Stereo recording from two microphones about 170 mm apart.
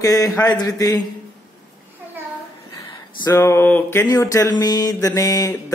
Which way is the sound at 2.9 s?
25° left (ahead or behind).